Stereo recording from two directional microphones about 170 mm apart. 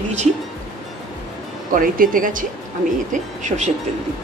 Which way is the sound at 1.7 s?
55° right (ahead or behind).